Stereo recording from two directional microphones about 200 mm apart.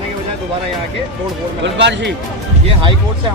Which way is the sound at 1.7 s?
60° right (ahead or behind).